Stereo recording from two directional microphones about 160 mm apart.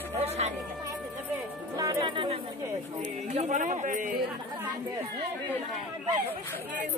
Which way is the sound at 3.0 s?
45° right (ahead or behind).